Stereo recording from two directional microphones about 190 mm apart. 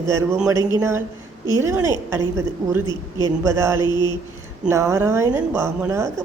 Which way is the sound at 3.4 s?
15° right (ahead or behind).